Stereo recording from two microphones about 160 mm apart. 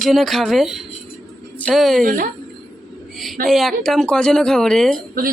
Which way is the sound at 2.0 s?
60° right (ahead or behind).